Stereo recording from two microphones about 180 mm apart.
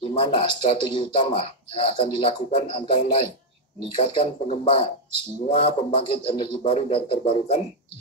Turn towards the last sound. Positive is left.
turn(degrees=35)  # may be behind; listen again after turning